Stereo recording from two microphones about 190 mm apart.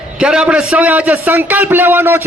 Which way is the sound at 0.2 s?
5° right (ahead or behind).